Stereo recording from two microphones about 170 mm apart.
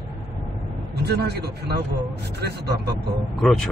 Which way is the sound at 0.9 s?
75° right (ahead or behind).